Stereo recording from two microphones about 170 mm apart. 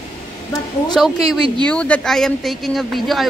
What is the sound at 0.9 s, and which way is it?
Speech, centre (ahead or behind).